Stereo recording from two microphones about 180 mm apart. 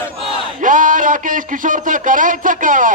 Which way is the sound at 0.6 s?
45° right (ahead or behind).